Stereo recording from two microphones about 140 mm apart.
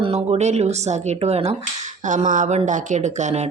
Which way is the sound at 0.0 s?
45° right (ahead or behind).